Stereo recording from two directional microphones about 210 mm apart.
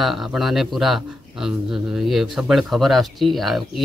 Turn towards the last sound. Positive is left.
turn(degrees=0)  # may be behind; listen again after turning